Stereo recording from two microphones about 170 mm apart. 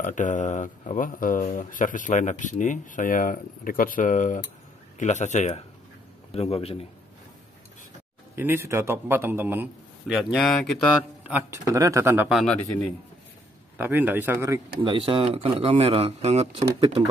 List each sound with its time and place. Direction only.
0.0 s a man's voice: 45° left (ahead or behind)
8.4 s a man's voice: 15° right (ahead or behind)
10.1 s speech: centre (ahead or behind)
11.2 s a man's voice: 10° right (ahead or behind)
12.3 s speech: centre (ahead or behind)
13.7 s a man's voice: 10° right (ahead or behind)
14.8 s speech: 30° right (ahead or behind)